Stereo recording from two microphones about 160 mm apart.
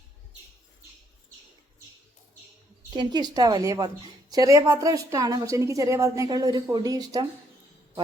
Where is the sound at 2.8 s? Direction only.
25° right (ahead or behind).